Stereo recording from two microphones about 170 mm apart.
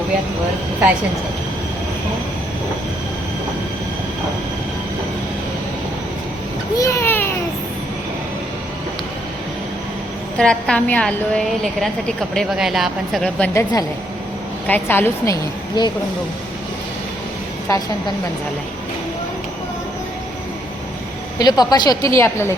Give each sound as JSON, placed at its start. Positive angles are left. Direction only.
{"t": 6.7, "sound": "a sound", "side_deg": 15}
{"t": 10.3, "sound": "a woman's voice", "side_deg": 5}
{"t": 13.5, "sound": "a woman's voice", "side_deg": 15}
{"t": 17.7, "sound": "a woman's voice", "side_deg": 20}
{"t": 21.3, "sound": "a woman's voice", "side_deg": 25}